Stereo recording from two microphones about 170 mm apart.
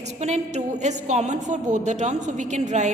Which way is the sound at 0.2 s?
45° right (ahead or behind).